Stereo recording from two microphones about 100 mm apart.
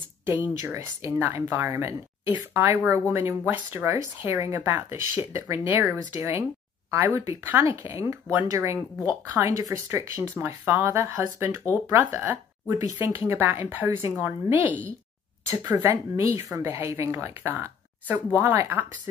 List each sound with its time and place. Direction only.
0.7 s a woman's voice: 30° right (ahead or behind)
15.7 s speech: 30° right (ahead or behind)